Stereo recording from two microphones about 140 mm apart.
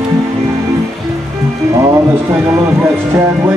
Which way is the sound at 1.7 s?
20° right (ahead or behind).